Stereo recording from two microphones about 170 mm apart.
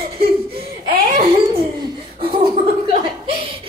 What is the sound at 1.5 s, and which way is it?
Giggle, 30° right (ahead or behind).